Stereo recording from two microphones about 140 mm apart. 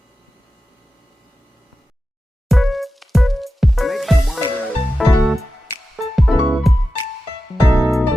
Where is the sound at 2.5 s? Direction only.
Centre (ahead or behind).